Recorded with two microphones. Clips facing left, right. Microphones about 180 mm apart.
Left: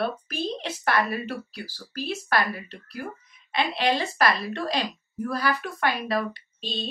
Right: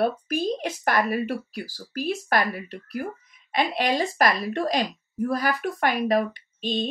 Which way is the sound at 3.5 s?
45° right (ahead or behind).